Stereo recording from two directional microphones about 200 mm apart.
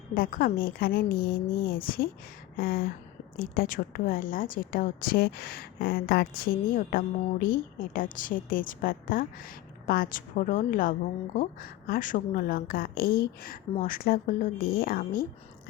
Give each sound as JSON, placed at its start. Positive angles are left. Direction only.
{"t": 0.1, "sound": "a woman's voice", "side_deg": 45}